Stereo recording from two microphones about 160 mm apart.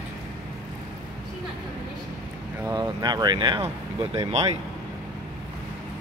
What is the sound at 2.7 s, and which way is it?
Speech, 25° right (ahead or behind).